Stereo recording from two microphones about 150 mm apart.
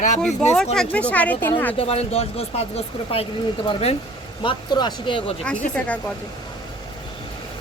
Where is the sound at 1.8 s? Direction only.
40° left (ahead or behind).